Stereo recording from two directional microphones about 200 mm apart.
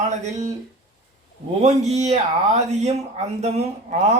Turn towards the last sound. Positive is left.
turn(degrees=-35)  # may be behind; listen again after turning